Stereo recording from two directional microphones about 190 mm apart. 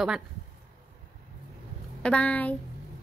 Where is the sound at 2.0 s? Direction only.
5° left (ahead or behind).